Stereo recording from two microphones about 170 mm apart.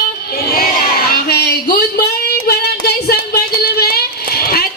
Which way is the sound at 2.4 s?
70° left (ahead or behind).